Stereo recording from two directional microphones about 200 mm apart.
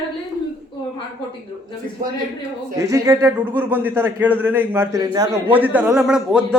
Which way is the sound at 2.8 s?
15° right (ahead or behind).